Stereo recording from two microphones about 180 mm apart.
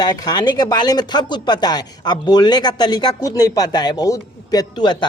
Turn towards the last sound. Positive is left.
turn(degrees=25)  # may be behind; listen again after turning